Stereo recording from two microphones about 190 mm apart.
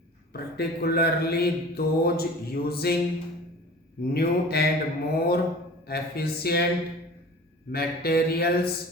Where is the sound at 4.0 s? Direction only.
55° left (ahead or behind).